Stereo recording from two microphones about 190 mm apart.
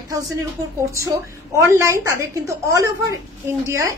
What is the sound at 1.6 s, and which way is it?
Speech, 15° right (ahead or behind).